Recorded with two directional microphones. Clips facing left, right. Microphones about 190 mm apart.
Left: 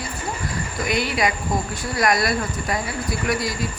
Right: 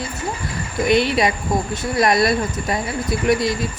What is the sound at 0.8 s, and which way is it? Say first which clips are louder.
Speech: right 6 dB; 25° right (ahead or behind).